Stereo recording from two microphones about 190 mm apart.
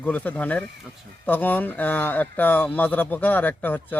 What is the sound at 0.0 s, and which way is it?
Speech, 10° left (ahead or behind).